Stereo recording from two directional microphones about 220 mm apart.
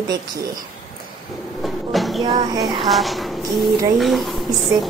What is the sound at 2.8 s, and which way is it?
Speech, centre (ahead or behind).